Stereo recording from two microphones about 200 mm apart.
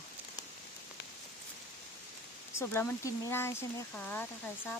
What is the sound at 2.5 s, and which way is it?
Speech, 15° left (ahead or behind).